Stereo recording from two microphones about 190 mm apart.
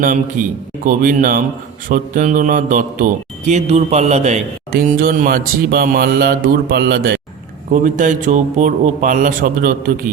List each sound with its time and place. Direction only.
0.0 s a man's voice: 45° right (ahead or behind)
7.7 s a man's voice: 40° right (ahead or behind)